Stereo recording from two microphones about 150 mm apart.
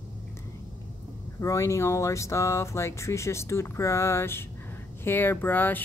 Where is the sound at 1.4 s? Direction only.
20° left (ahead or behind).